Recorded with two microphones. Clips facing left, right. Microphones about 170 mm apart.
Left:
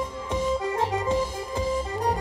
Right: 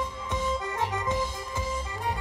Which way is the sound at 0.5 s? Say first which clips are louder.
Left 5 dB; 30° left (ahead or behind).